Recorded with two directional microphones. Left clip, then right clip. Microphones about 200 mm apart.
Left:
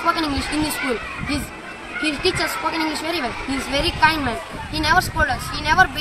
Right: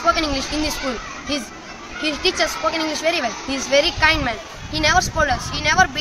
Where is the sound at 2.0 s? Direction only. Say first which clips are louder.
Right 1 dB; centre (ahead or behind).